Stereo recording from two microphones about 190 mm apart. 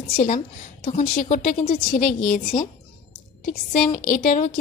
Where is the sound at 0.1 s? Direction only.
45° left (ahead or behind).